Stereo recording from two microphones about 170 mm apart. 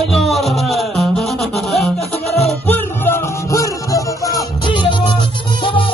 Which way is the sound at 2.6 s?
10° left (ahead or behind).